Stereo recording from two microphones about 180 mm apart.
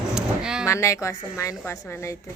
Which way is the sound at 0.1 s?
5° right (ahead or behind).